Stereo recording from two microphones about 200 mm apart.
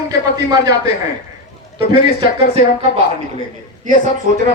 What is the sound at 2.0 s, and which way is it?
Speech, 50° left (ahead or behind).